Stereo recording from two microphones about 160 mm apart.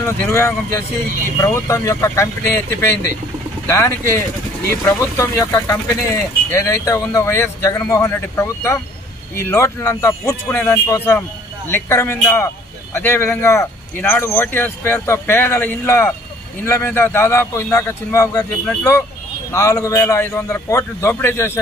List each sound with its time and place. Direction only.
0.0 s speech: 15° left (ahead or behind)
19.5 s speech: 20° left (ahead or behind)